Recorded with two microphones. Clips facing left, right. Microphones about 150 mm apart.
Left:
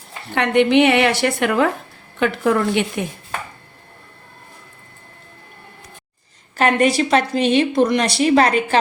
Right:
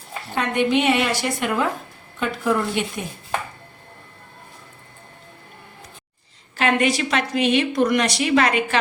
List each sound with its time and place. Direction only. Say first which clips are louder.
0.3 s a woman's voice: left 6 dB; 65° left (ahead or behind)
6.6 s a woman's voice: left 4 dB; 35° left (ahead or behind)